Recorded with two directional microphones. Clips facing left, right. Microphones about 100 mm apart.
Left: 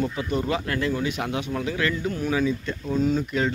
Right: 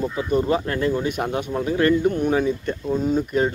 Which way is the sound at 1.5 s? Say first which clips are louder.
Right 10 dB; 35° right (ahead or behind).